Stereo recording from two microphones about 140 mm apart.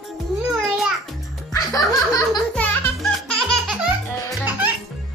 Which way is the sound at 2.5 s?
5° left (ahead or behind).